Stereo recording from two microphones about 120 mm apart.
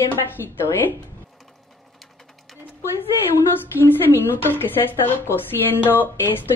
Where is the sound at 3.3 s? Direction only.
20° left (ahead or behind).